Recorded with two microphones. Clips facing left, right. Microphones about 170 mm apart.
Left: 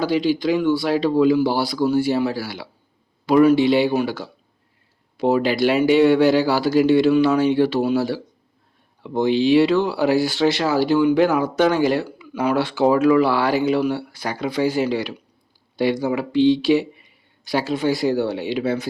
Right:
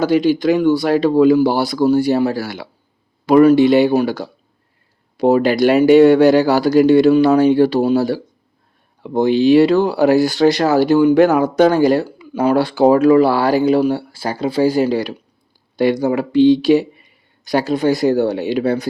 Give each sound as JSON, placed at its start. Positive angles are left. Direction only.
{"t": 0.0, "sound": "speech", "side_deg": -45}